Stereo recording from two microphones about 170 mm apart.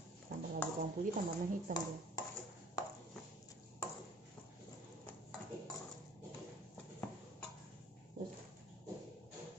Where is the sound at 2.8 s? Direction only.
20° left (ahead or behind).